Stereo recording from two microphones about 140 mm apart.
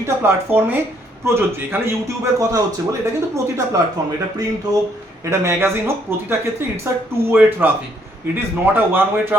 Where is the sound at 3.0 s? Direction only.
20° right (ahead or behind).